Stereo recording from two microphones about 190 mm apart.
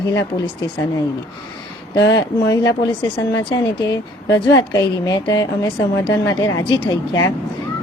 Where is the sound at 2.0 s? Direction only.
70° left (ahead or behind).